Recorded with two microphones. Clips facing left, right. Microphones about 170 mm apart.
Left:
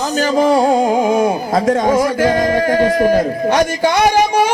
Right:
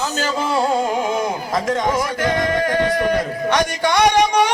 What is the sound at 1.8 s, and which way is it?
Music, 30° left (ahead or behind).